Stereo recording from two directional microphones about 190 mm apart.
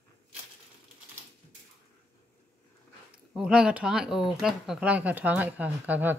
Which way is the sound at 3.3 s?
5° right (ahead or behind).